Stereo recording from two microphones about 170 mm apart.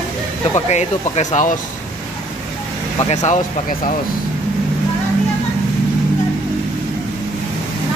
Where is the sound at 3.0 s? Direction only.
40° left (ahead or behind).